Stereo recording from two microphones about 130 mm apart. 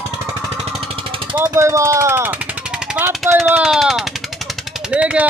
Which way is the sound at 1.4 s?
20° right (ahead or behind).